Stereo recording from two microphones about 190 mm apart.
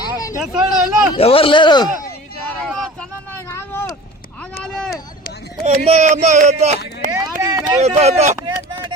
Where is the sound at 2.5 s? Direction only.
5° left (ahead or behind).